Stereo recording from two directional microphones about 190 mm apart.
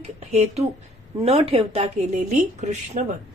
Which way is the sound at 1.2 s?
30° right (ahead or behind).